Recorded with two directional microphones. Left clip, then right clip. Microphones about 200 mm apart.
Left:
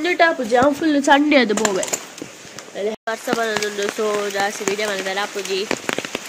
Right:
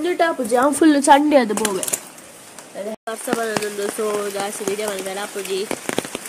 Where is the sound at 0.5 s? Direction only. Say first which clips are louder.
Right 1 dB; 30° right (ahead or behind).